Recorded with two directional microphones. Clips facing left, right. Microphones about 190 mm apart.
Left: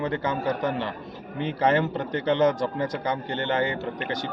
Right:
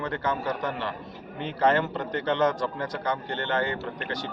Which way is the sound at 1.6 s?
15° left (ahead or behind).